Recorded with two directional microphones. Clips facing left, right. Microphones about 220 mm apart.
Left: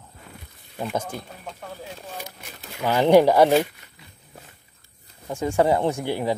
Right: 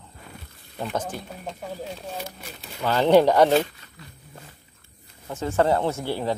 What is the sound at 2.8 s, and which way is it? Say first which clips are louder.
Speech: left 1 dB; 15° left (ahead or behind).